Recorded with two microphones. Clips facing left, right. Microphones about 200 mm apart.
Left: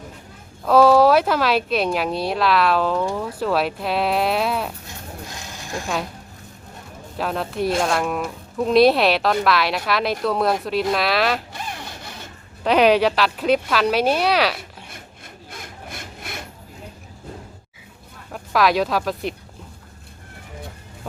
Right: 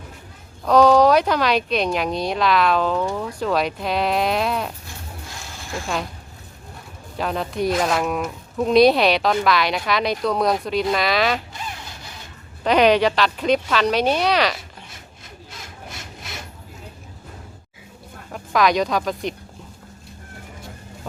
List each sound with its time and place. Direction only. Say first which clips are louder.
0.6 s speech: even; 5° left (ahead or behind)
7.2 s speech: even; centre (ahead or behind)
12.6 s speech: even; 5° left (ahead or behind)
15.6 s sawing: left 1 dB; 55° left (ahead or behind)
18.3 s speech: even; centre (ahead or behind)